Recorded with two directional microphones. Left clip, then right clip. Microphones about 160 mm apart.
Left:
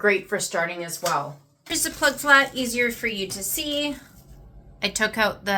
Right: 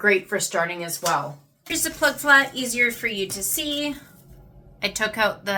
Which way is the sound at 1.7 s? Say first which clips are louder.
Right 1 dB; 30° left (ahead or behind).